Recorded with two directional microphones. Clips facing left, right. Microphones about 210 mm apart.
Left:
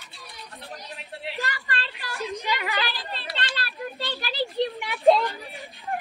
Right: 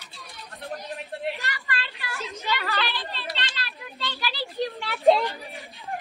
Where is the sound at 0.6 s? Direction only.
50° right (ahead or behind).